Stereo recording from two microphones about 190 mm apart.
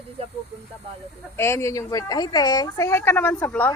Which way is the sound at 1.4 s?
15° left (ahead or behind).